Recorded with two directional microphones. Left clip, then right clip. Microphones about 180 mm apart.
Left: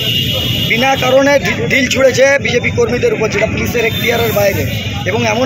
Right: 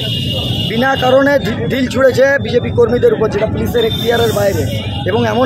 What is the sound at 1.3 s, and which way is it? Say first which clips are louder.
Speech: left 3 dB; 20° right (ahead or behind).